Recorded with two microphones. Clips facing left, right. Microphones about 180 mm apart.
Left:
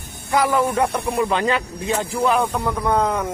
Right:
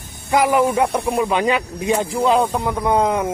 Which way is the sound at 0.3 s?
20° right (ahead or behind).